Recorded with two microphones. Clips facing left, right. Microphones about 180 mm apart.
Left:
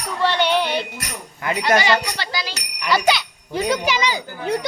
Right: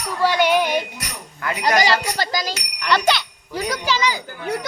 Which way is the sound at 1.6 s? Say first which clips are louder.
Even; 40° right (ahead or behind).